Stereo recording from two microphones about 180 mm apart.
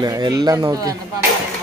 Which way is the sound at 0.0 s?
20° right (ahead or behind).